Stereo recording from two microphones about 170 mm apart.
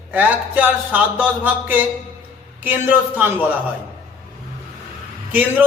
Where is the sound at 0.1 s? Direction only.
10° right (ahead or behind).